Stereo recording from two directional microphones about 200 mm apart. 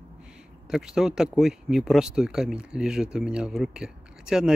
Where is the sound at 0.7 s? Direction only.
Centre (ahead or behind).